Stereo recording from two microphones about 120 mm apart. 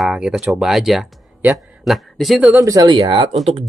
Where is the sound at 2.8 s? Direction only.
45° right (ahead or behind).